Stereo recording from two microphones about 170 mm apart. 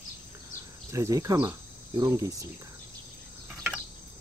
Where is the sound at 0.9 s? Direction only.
20° right (ahead or behind).